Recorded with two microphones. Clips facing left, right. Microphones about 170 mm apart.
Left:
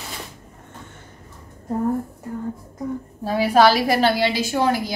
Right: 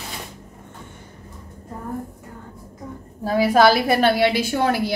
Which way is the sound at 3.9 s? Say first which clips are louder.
Right 1 dB; 55° right (ahead or behind).